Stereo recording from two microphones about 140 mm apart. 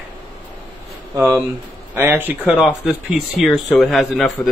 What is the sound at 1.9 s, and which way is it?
Speech, 15° right (ahead or behind).